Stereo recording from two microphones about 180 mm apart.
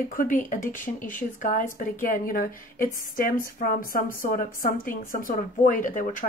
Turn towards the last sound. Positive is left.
turn(degrees=45)  # may be behind; listen again after turning